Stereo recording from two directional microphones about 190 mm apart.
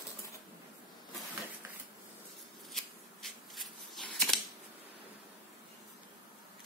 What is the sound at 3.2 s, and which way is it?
Shuffling cards, centre (ahead or behind).